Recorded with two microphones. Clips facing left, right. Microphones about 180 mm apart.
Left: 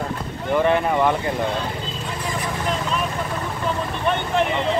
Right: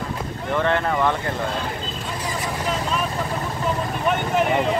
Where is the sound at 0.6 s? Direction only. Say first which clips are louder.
Left 3 dB; 15° left (ahead or behind).